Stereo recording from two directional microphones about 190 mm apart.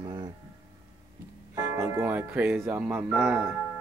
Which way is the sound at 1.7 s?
15° right (ahead or behind).